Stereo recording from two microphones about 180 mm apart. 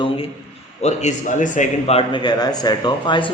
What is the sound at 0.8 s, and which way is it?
A man's voice, 40° left (ahead or behind).